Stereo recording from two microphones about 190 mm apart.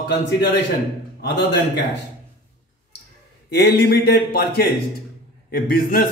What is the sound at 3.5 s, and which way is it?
A man's voice, 55° left (ahead or behind).